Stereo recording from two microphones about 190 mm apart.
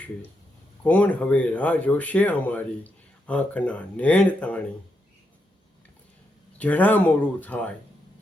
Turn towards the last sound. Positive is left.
turn(degrees=10)  # may be behind; listen again after turning